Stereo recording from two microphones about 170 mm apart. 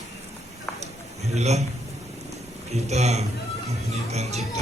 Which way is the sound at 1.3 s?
40° right (ahead or behind).